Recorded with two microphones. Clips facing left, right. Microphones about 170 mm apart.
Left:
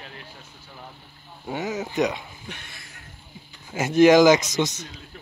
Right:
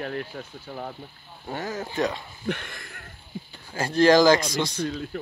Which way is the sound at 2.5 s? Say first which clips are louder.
Right 10 dB; 55° right (ahead or behind).